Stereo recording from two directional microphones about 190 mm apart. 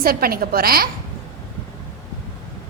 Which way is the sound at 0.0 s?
50° right (ahead or behind).